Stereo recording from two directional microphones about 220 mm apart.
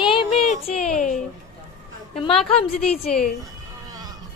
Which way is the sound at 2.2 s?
25° left (ahead or behind).